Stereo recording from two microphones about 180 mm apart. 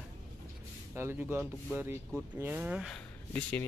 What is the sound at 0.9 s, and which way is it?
Speech, 15° right (ahead or behind).